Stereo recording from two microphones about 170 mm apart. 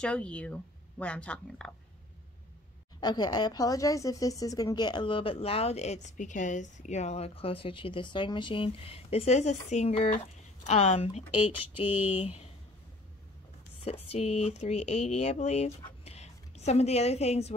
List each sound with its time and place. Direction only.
0.0 s speech: 5° left (ahead or behind)
3.0 s speech: 25° left (ahead or behind); by 11.2 s 40° left (ahead or behind)
13.8 s speech: 35° left (ahead or behind)